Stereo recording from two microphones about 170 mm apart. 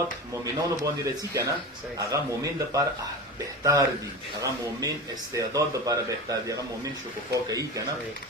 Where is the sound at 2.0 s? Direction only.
20° right (ahead or behind).